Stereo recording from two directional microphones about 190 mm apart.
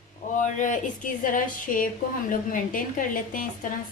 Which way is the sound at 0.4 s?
40° left (ahead or behind).